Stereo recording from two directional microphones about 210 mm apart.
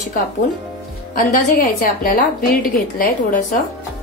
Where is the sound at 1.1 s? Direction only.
40° left (ahead or behind).